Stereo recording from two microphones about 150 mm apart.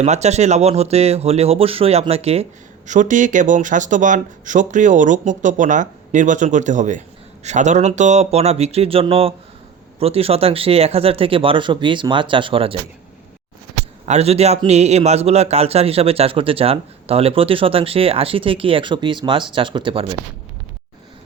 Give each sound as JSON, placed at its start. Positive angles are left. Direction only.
{"t": 0.0, "sound": "speech", "side_deg": -45}
{"t": 14.0, "sound": "speech", "side_deg": -45}